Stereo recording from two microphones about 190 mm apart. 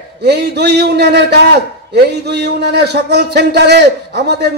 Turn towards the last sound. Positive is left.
turn(degrees=-60)  # may be behind; listen again after turning